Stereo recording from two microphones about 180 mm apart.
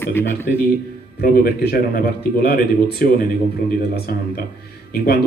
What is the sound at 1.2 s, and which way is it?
Speech, 55° left (ahead or behind).